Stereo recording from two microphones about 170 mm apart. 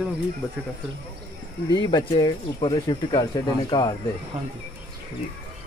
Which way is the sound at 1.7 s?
25° left (ahead or behind).